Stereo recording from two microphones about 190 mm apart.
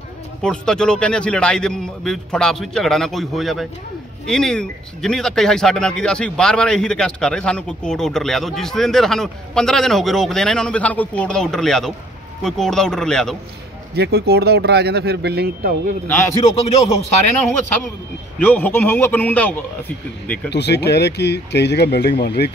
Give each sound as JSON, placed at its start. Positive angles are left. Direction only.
{"t": 0.4, "sound": "speech", "side_deg": 5}
{"t": 13.9, "sound": "speech", "side_deg": -60}
{"t": 16.1, "sound": "a man's voice", "side_deg": 15}
{"t": 18.4, "sound": "a man's voice", "side_deg": 10}
{"t": 20.4, "sound": "speech", "side_deg": 65}